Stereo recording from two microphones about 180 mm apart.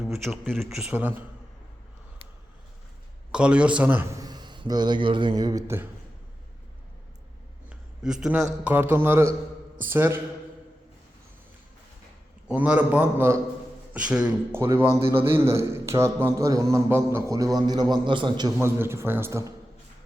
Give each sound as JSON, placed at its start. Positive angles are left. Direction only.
{"t": 0.1, "sound": "speech", "side_deg": 0}
{"t": 3.3, "sound": "a man's voice", "side_deg": -5}
{"t": 7.7, "sound": "a sound", "side_deg": -5}
{"t": 8.6, "sound": "a man's voice", "side_deg": -10}
{"t": 12.5, "sound": "a man's voice", "side_deg": -5}
{"t": 18.6, "sound": "a man's voice", "side_deg": -15}